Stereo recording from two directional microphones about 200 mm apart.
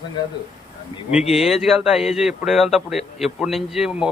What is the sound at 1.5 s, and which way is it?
A man's voice, 5° right (ahead or behind).